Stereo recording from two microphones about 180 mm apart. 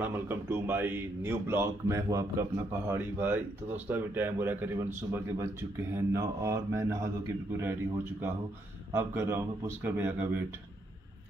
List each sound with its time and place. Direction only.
0.0 s a man's voice: 10° right (ahead or behind)